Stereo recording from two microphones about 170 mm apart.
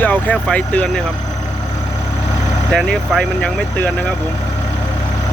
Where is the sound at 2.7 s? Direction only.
5° left (ahead or behind).